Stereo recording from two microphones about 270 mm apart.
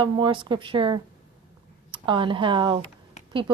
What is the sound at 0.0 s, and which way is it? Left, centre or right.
Speech, centre.